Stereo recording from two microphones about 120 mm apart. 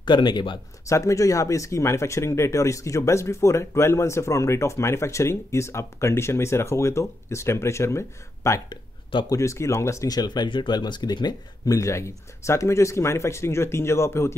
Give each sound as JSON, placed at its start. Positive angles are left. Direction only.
{"t": 0.0, "sound": "speech", "side_deg": 40}
{"t": 0.8, "sound": "speech", "side_deg": 25}